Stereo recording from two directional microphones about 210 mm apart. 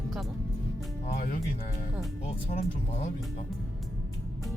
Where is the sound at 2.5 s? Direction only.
35° left (ahead or behind).